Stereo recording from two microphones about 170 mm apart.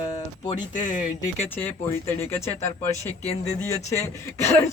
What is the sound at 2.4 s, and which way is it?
Speech, 40° left (ahead or behind).